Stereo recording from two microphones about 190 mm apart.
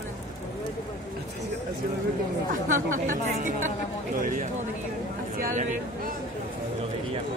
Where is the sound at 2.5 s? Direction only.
45° right (ahead or behind).